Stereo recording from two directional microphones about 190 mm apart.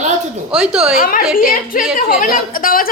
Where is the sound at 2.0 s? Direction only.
45° left (ahead or behind).